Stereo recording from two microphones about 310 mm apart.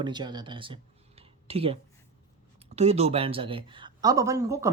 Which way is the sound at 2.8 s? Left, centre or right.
Centre.